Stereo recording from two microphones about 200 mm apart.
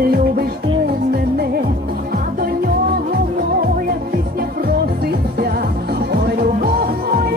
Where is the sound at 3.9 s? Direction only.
50° right (ahead or behind).